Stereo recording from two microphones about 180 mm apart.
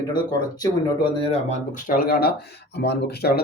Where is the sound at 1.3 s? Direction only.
45° left (ahead or behind); by 3.4 s 60° left (ahead or behind).